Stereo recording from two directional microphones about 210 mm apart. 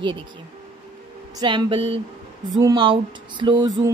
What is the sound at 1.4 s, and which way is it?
A woman's voice, 20° right (ahead or behind).